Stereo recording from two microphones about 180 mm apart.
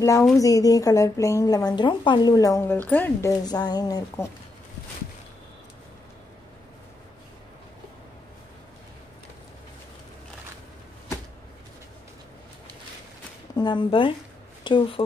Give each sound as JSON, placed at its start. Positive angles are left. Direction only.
{"t": 0.4, "sound": "a woman's voice", "side_deg": 20}
{"t": 13.6, "sound": "a woman's voice", "side_deg": 25}